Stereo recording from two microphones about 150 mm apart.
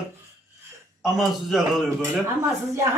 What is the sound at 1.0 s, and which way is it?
Speech, centre (ahead or behind).